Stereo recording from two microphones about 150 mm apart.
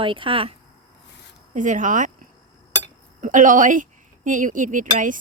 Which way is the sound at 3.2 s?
60° right (ahead or behind).